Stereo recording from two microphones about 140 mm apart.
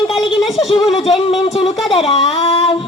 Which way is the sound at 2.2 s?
45° left (ahead or behind).